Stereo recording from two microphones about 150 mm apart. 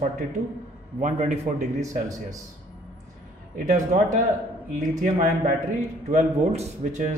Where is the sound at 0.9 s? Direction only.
55° right (ahead or behind).